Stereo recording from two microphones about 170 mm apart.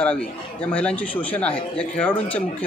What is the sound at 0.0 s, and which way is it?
Speech, 5° left (ahead or behind).